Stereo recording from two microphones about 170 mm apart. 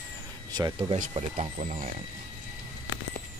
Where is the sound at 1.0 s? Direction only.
40° right (ahead or behind).